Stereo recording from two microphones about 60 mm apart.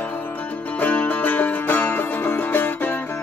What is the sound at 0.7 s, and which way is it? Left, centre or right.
Music, left.